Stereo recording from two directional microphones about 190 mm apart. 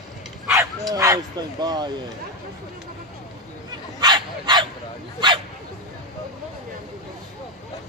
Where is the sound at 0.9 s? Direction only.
15° right (ahead or behind).